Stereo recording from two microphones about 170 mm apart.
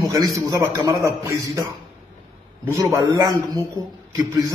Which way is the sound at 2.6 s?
15° right (ahead or behind).